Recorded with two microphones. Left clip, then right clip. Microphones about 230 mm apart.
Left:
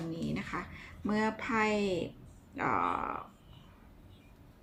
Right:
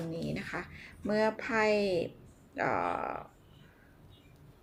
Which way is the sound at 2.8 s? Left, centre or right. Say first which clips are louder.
Left 1 dB; centre.